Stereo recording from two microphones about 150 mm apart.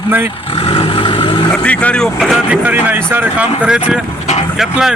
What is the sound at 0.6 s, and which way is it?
Vehicle, 35° left (ahead or behind).